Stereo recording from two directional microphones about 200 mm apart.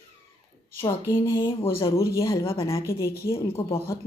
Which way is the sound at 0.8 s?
15° left (ahead or behind).